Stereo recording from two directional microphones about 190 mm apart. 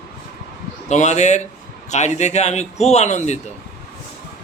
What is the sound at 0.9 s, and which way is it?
Speech, 40° left (ahead or behind).